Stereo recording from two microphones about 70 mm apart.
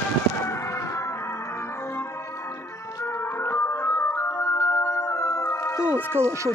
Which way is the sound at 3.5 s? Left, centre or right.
Left.